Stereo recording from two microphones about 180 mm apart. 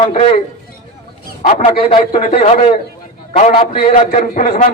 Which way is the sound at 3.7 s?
55° left (ahead or behind).